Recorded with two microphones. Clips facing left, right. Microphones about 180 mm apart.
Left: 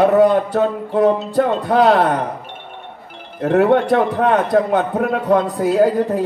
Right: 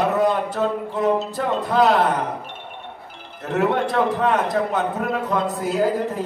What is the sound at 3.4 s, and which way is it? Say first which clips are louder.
Speech: left 7 dB; 60° left (ahead or behind).